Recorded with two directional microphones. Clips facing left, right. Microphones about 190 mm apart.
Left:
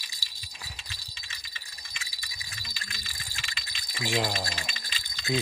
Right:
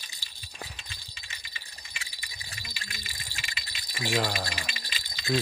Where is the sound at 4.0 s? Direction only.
15° left (ahead or behind).